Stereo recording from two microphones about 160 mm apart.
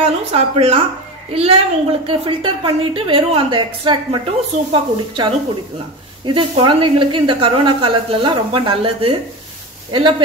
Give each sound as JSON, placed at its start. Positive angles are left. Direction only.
{"t": 0.0, "sound": "a woman's voice", "side_deg": -40}